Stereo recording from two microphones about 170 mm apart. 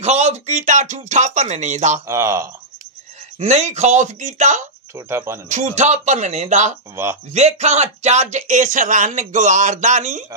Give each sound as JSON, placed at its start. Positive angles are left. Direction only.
{"t": 0.0, "sound": "speech", "side_deg": -40}
{"t": 2.0, "sound": "speech", "side_deg": -15}
{"t": 3.3, "sound": "speech", "side_deg": -40}
{"t": 4.9, "sound": "speech", "side_deg": -15}
{"t": 5.5, "sound": "speech", "side_deg": -45}